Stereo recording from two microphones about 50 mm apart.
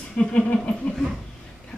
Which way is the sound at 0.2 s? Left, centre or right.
Left.